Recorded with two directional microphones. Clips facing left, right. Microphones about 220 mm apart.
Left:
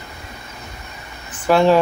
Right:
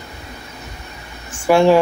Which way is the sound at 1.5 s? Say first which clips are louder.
Right 2 dB; 15° right (ahead or behind).